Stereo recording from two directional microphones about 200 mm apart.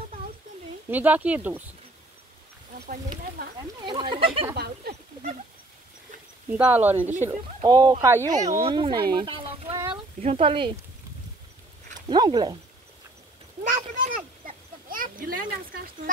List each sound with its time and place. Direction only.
0.8 s speech: 10° right (ahead or behind)
3.4 s speech: 50° right (ahead or behind)
3.8 s speech: 25° right (ahead or behind)
4.6 s a sound: 50° right (ahead or behind)
6.5 s speech: 5° right (ahead or behind); by 9.0 s 25° right (ahead or behind)
9.1 s a sound: 25° right (ahead or behind)
10.2 s speech: 30° right (ahead or behind)
12.1 s speech: 20° right (ahead or behind)
13.7 s a sound: 40° right (ahead or behind)